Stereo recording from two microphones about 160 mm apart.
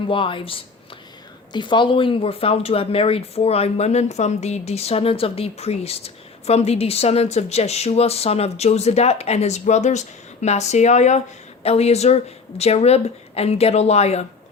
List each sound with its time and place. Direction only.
0.1 s speech: 30° left (ahead or behind)